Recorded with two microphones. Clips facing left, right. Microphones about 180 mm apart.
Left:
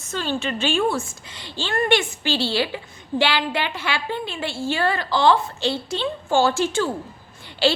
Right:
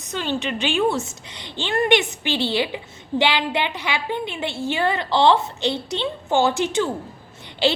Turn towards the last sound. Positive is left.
turn(degrees=-20)  # may be behind; listen again after turning